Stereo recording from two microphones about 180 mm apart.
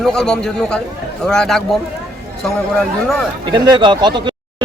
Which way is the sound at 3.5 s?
25° right (ahead or behind).